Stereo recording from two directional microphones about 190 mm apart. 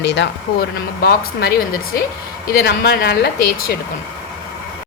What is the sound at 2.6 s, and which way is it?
Speech, 60° left (ahead or behind).